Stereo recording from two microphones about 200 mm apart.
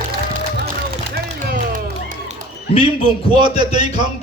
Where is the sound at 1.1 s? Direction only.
45° right (ahead or behind).